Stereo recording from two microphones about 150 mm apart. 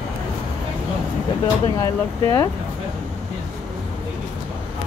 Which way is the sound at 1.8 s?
20° left (ahead or behind).